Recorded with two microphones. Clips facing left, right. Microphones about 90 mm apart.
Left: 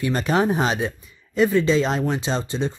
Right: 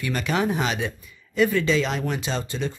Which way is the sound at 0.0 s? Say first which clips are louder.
Left 4 dB; 35° left (ahead or behind).